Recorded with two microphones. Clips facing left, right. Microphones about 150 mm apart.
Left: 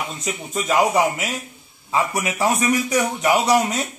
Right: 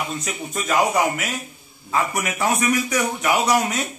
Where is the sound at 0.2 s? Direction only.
20° left (ahead or behind).